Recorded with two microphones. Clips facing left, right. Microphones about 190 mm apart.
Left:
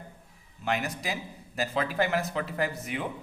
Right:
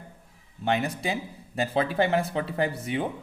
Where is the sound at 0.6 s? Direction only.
30° right (ahead or behind).